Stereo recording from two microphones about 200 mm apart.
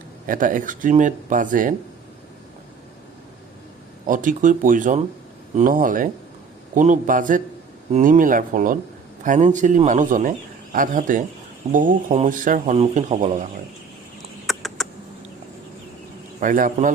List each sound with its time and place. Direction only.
0.3 s a man's voice: 40° right (ahead or behind)
4.0 s a man's voice: 40° right (ahead or behind)
14.4 s a sound: centre (ahead or behind)
16.4 s a man's voice: 40° right (ahead or behind)